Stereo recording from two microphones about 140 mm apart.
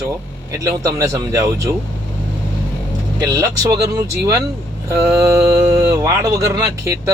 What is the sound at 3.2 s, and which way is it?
Speech, 25° right (ahead or behind).